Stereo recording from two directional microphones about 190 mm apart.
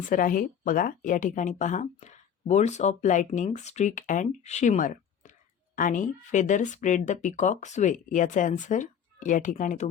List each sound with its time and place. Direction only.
0.0 s speech: 45° left (ahead or behind)